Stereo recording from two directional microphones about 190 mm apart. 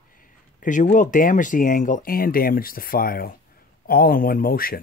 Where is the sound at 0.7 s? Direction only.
40° left (ahead or behind).